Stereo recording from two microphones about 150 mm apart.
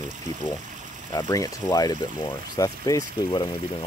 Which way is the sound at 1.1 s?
25° left (ahead or behind).